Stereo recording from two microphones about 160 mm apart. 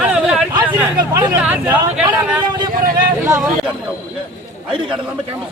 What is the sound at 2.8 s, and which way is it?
Vehicle, 65° right (ahead or behind).